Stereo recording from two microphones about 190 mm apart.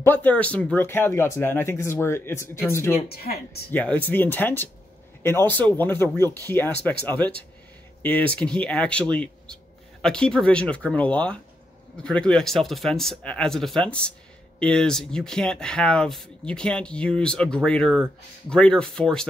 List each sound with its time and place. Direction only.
0.0 s speech: 10° left (ahead or behind)
3.1 s speech: 55° left (ahead or behind)
3.7 s speech: 10° left (ahead or behind)